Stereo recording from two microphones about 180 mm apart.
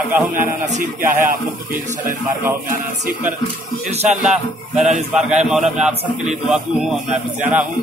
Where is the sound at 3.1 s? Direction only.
45° right (ahead or behind).